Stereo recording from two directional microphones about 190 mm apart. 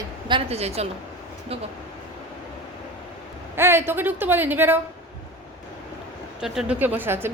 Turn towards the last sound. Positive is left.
turn(degrees=-10)  # may be behind; listen again after turning